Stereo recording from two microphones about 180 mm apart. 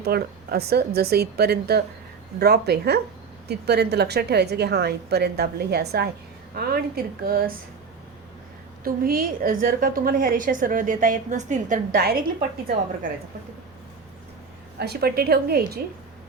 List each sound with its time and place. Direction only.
0.0 s a woman's voice: 60° right (ahead or behind)
8.8 s a woman's voice: 55° right (ahead or behind)
14.8 s a woman's voice: 60° right (ahead or behind)